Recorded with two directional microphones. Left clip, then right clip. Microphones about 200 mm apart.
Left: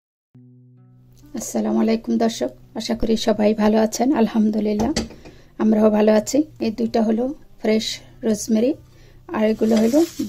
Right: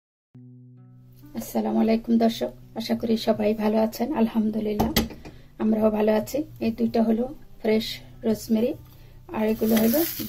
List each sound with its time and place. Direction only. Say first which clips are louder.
1.3 s speech: left 4 dB; 50° left (ahead or behind)